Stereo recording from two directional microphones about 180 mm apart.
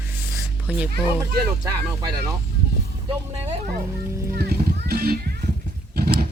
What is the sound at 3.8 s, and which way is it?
Speech, 15° right (ahead or behind).